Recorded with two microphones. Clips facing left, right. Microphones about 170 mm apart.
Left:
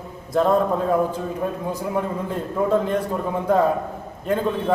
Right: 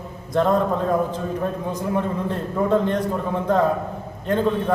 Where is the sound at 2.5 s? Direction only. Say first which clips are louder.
Even; 10° left (ahead or behind).